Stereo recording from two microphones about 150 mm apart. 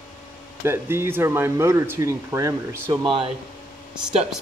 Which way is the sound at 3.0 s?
35° right (ahead or behind).